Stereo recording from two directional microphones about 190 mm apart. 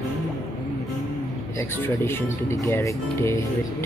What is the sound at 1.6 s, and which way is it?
Speech, 10° left (ahead or behind).